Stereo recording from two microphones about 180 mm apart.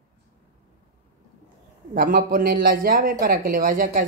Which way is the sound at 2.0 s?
55° right (ahead or behind).